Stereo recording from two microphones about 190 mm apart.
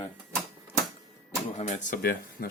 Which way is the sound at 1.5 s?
40° left (ahead or behind).